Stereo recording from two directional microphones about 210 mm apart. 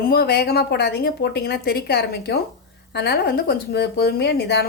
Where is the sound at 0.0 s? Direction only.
45° left (ahead or behind).